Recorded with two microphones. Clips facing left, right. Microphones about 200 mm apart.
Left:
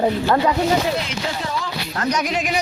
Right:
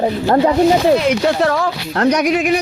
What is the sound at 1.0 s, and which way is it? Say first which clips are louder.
Speech: right 12 dB; 70° right (ahead or behind).